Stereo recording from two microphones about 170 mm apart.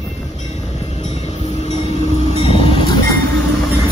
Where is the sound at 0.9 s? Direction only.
40° left (ahead or behind).